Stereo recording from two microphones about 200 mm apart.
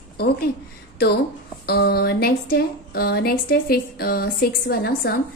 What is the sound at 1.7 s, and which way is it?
Speech, 50° left (ahead or behind).